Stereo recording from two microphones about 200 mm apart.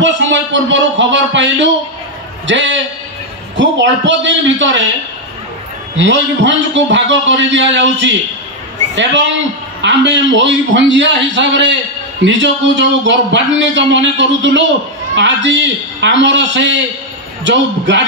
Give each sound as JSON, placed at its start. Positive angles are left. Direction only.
{"t": 0.0, "sound": "a man's voice", "side_deg": -65}
{"t": 5.9, "sound": "a man's voice", "side_deg": -65}
{"t": 9.8, "sound": "a man's voice", "side_deg": -65}